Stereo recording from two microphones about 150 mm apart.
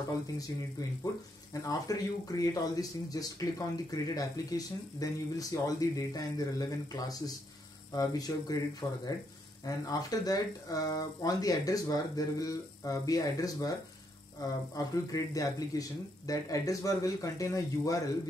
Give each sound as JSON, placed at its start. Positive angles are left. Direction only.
{"t": 0.8, "sound": "speech", "side_deg": 25}
{"t": 14.8, "sound": "speech", "side_deg": 25}